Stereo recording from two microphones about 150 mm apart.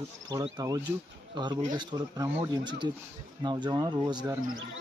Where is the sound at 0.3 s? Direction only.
25° right (ahead or behind).